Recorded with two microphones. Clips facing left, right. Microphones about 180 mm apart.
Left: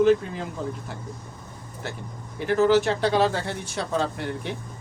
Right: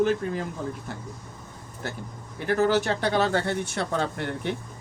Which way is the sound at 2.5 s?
55° right (ahead or behind).